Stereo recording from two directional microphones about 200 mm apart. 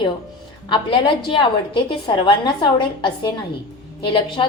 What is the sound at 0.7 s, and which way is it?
A woman's voice, 25° left (ahead or behind).